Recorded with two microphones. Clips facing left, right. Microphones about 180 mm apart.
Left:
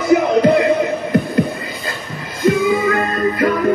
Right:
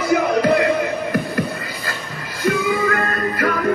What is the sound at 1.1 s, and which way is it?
Music, 20° left (ahead or behind).